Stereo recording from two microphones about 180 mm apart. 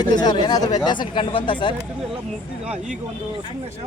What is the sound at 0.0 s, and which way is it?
Speech, 25° left (ahead or behind).